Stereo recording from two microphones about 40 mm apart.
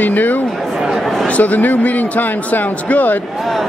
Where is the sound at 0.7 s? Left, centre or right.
Centre.